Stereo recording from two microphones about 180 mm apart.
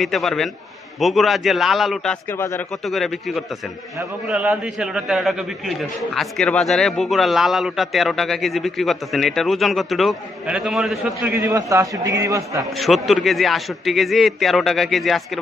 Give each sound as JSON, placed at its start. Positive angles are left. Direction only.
{"t": 0.0, "sound": "a man's voice", "side_deg": 0}
{"t": 2.3, "sound": "speech", "side_deg": 15}
{"t": 2.8, "sound": "a man's voice", "side_deg": 0}
{"t": 11.4, "sound": "a man's voice", "side_deg": -20}
{"t": 12.7, "sound": "a man's voice", "side_deg": 0}